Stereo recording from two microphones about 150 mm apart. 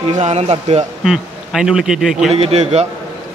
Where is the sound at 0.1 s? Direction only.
50° right (ahead or behind).